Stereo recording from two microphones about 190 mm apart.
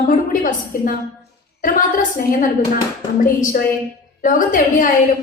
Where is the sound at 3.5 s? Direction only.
45° left (ahead or behind).